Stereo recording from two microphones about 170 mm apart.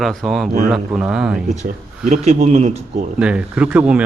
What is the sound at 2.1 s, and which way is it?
Speech, 40° right (ahead or behind).